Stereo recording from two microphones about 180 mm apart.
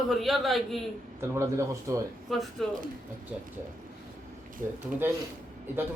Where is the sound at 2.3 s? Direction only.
Centre (ahead or behind).